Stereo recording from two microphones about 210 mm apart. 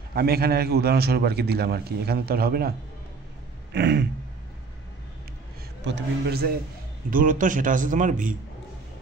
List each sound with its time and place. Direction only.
0.1 s a man's voice: 45° right (ahead or behind)
3.7 s a man's voice: 50° right (ahead or behind)
5.9 s a man's voice: 55° right (ahead or behind); by 8.4 s 40° right (ahead or behind)